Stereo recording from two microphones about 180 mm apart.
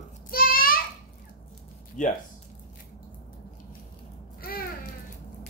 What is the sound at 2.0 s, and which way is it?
Speech, 45° left (ahead or behind).